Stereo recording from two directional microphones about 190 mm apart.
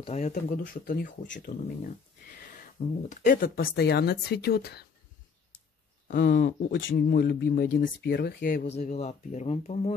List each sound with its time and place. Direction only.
0.0 s speech: 35° left (ahead or behind); by 4.8 s 55° left (ahead or behind)
6.0 s speech: 45° left (ahead or behind)
8.7 s speech: 35° left (ahead or behind)